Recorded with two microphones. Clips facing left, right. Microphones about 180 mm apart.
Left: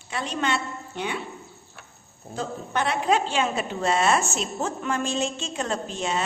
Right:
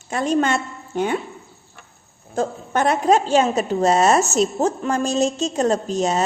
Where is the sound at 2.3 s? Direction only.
45° right (ahead or behind).